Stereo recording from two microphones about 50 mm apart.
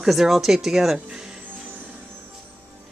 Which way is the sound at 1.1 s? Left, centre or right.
Centre.